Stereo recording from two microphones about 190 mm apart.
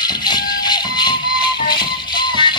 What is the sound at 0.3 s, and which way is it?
Music, 25° left (ahead or behind).